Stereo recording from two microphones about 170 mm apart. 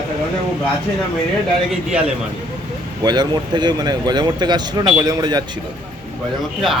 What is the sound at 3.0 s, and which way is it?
A man's voice, 25° right (ahead or behind).